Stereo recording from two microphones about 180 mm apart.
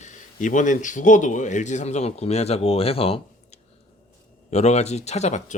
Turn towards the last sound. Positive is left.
turn(degrees=40)  # may be behind; listen again after turning